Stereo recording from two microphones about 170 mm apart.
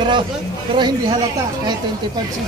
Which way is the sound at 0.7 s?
25° right (ahead or behind).